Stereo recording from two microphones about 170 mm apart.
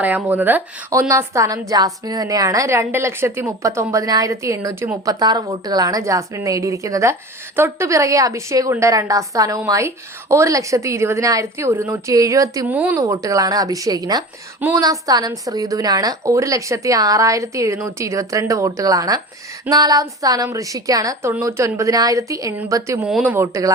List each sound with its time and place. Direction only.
0.0 s a woman's voice: 10° right (ahead or behind)
23.0 s speech: 5° right (ahead or behind)